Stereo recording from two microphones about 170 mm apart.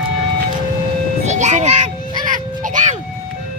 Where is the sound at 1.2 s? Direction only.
45° right (ahead or behind).